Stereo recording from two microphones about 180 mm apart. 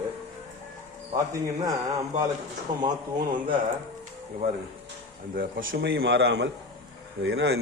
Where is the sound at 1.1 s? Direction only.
20° right (ahead or behind).